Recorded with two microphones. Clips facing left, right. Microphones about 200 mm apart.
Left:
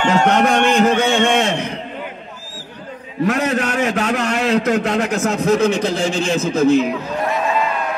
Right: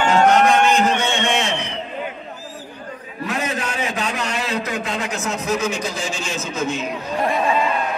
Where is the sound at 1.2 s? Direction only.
50° left (ahead or behind).